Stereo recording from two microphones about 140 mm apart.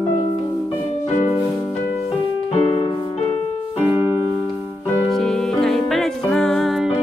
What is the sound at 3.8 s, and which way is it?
Music, 15° right (ahead or behind).